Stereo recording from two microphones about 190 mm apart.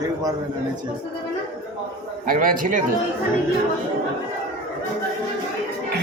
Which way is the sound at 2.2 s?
45° right (ahead or behind).